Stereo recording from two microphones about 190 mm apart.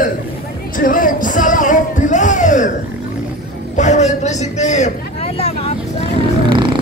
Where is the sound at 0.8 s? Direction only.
45° left (ahead or behind).